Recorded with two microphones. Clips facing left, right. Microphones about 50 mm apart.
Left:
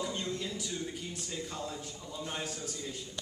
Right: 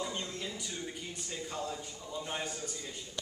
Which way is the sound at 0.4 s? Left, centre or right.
Centre.